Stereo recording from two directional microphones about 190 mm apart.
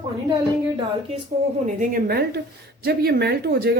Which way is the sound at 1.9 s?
55° right (ahead or behind).